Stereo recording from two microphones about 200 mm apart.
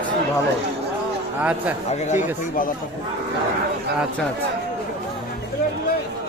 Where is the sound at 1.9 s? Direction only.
35° left (ahead or behind).